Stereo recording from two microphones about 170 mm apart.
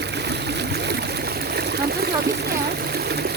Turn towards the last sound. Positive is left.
turn(degrees=-70)  # may be behind; listen again after turning